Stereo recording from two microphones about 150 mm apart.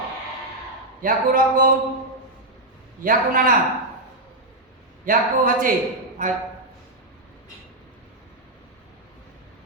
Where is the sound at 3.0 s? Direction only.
65° right (ahead or behind).